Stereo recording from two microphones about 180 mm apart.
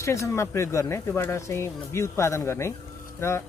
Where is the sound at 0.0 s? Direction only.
15° left (ahead or behind).